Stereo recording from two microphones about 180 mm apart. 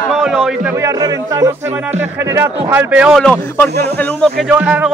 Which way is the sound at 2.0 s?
15° right (ahead or behind).